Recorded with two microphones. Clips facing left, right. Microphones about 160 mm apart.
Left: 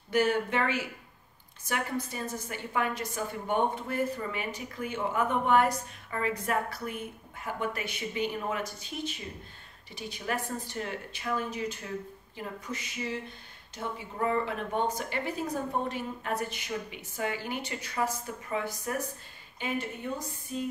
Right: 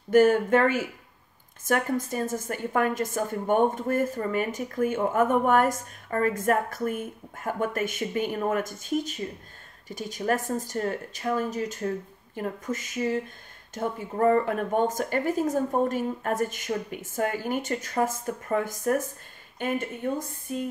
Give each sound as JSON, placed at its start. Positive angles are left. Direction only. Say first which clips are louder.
{"t": 0.1, "sound": "a woman's voice", "louder": "right 8 dB", "side_deg": -45}
{"t": 20.5, "sound": "music", "louder": "right 4 dB", "side_deg": -55}